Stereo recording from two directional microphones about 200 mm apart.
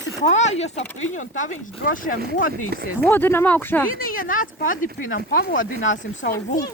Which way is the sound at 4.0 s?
45° left (ahead or behind).